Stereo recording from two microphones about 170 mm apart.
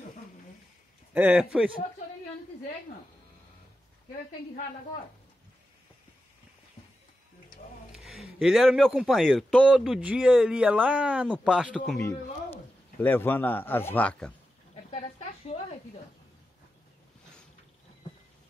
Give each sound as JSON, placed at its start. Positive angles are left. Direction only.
{"t": 1.1, "sound": "speech", "side_deg": -10}
{"t": 7.9, "sound": "speech", "side_deg": 0}
{"t": 12.0, "sound": "a man's voice", "side_deg": 15}
{"t": 14.9, "sound": "a sound", "side_deg": 40}